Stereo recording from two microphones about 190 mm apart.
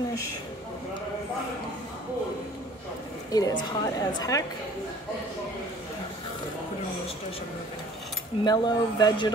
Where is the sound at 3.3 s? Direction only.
20° left (ahead or behind).